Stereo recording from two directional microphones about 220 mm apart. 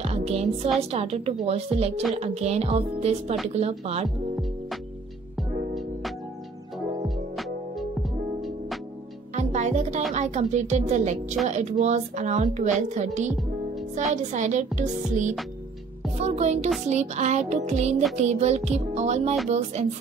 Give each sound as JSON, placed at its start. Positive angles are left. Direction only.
{"t": 0.0, "sound": "music", "side_deg": -30}
{"t": 0.9, "sound": "speech", "side_deg": -30}
{"t": 9.3, "sound": "music", "side_deg": -30}
{"t": 10.1, "sound": "a woman's voice", "side_deg": -30}